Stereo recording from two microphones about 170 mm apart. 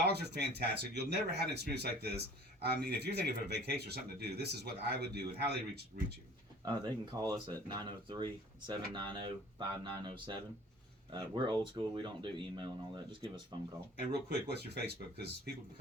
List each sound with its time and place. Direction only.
0.0 s speech: 75° right (ahead or behind)
6.7 s speech: 25° right (ahead or behind)
14.3 s speech: 75° right (ahead or behind)